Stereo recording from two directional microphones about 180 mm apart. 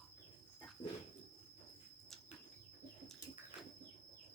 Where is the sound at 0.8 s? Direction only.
30° left (ahead or behind).